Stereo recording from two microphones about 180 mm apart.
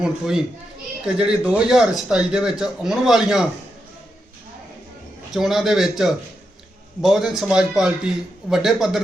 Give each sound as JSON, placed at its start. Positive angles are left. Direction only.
{"t": 0.0, "sound": "speech", "side_deg": -5}
{"t": 5.3, "sound": "speech", "side_deg": 0}